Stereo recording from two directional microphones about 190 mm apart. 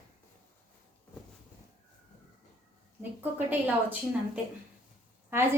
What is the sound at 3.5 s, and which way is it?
Speech, 10° right (ahead or behind).